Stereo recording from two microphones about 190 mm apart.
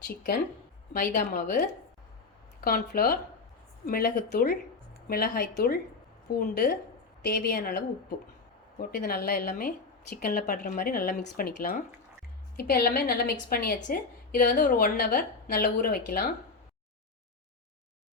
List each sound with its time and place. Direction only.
0.9 s a woman's voice: 45° left (ahead or behind)